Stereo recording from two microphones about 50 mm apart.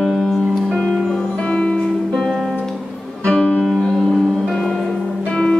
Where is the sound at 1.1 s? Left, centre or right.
Centre.